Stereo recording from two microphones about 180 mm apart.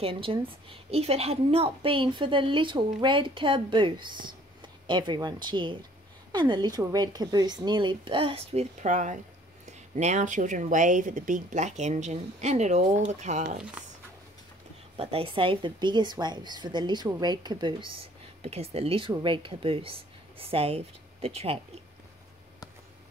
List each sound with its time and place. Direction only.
0.0 s a woman's voice: 30° right (ahead or behind)
15.0 s a woman's voice: 30° right (ahead or behind)